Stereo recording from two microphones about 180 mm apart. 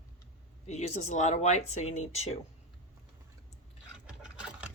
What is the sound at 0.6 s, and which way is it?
Speech, 40° left (ahead or behind).